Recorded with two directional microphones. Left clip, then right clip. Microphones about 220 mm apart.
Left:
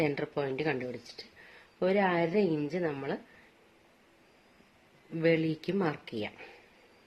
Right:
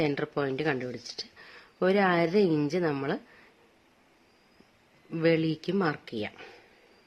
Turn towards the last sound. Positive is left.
turn(degrees=-20)  # may be behind; listen again after turning